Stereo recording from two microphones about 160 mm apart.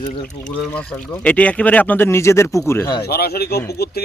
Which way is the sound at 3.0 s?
80° left.